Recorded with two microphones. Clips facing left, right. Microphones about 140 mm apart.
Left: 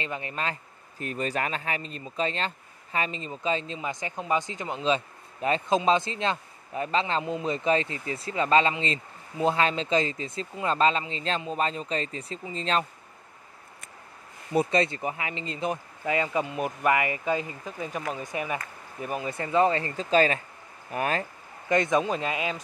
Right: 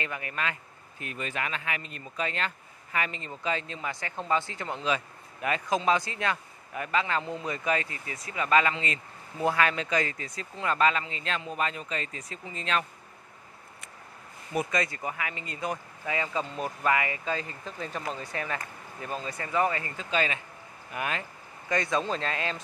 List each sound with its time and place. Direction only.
0.0 s speech: 25° left (ahead or behind)
14.5 s speech: 30° left (ahead or behind); by 19.3 s 15° left (ahead or behind)
19.3 s speech: 25° left (ahead or behind)
21.6 s speech: 20° left (ahead or behind)